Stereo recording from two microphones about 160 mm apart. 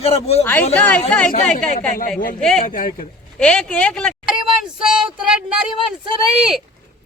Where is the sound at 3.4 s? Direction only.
5° left (ahead or behind).